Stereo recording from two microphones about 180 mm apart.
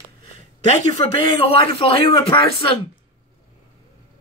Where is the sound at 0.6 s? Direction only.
40° left (ahead or behind).